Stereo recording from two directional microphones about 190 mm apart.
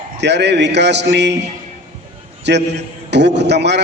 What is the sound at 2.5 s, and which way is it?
A man's voice, 65° right (ahead or behind).